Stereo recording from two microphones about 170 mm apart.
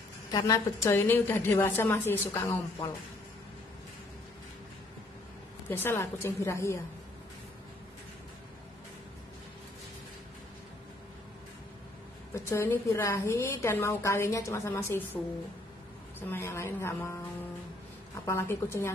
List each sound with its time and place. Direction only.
0.3 s a woman's voice: 20° left (ahead or behind)
5.7 s a woman's voice: 10° left (ahead or behind)
12.4 s a woman's voice: 15° left (ahead or behind)
16.2 s a woman's voice: 15° left (ahead or behind)
18.2 s a woman's voice: 15° left (ahead or behind)